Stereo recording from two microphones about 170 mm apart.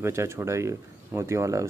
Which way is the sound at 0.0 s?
15° right (ahead or behind).